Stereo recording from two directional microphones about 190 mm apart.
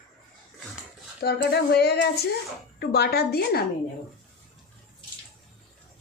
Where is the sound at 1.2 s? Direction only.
60° left (ahead or behind).